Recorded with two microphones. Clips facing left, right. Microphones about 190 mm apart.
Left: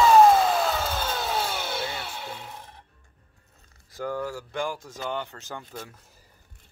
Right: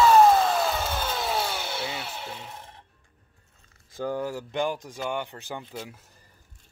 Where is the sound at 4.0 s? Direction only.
20° right (ahead or behind).